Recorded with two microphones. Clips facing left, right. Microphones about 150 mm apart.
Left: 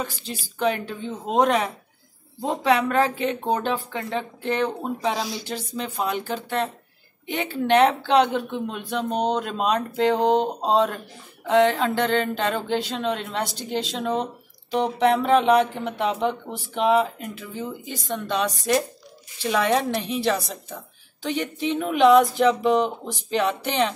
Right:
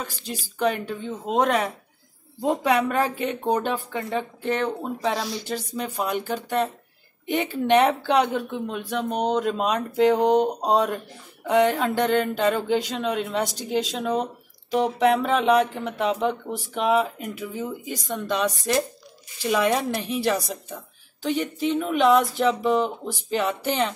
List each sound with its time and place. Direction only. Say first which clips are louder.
0.3 s speech: right 1 dB; 5° right (ahead or behind)
10.3 s mantra: right 1 dB; 25° left (ahead or behind)
11.7 s speech: right 1 dB; 5° right (ahead or behind)